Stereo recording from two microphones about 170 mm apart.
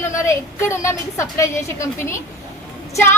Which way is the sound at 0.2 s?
15° left (ahead or behind).